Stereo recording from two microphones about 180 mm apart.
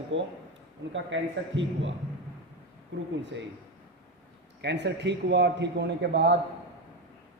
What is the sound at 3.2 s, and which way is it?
Speech, 90° right.